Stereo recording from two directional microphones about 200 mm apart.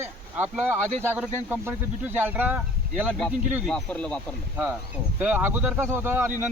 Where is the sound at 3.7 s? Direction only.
5° left (ahead or behind).